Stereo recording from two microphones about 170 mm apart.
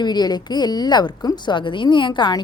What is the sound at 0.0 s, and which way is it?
A woman's voice, 25° left (ahead or behind).